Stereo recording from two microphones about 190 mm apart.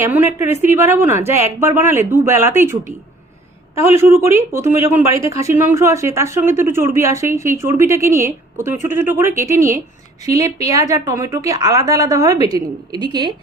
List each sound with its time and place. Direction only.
0.0 s speech: 10° right (ahead or behind)
3.8 s speech: 15° right (ahead or behind)